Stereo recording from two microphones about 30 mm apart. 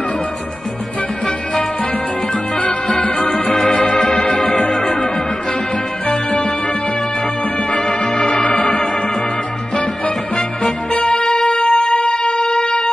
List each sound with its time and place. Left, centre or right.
2.9 s music: left
3.7 s organ: left
4.6 s music: centre
7.7 s music: left
8.3 s organ: left
10.3 s music: left
11.0 s music: left